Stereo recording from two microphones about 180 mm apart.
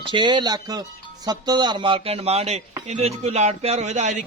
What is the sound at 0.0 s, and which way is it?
A man's voice, 25° right (ahead or behind).